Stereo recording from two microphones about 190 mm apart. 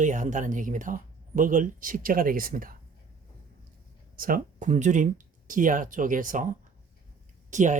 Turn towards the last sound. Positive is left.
turn(degrees=-40)  # may be behind; listen again after turning